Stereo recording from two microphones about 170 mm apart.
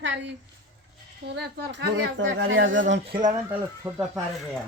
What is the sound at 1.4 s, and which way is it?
Speech, 90° right.